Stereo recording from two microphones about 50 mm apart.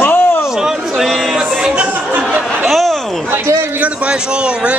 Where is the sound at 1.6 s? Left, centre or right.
Centre.